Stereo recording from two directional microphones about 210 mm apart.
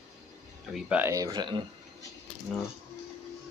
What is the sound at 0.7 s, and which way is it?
Speech, 5° right (ahead or behind).